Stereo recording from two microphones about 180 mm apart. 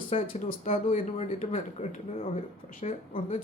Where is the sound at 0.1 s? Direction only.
30° left (ahead or behind).